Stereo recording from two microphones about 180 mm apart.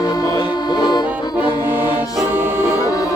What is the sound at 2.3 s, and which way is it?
Music, 15° right (ahead or behind).